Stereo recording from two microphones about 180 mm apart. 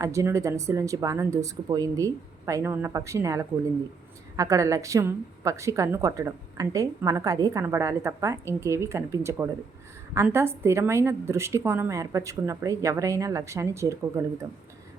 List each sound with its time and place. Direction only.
0.0 s a woman's voice: 15° right (ahead or behind)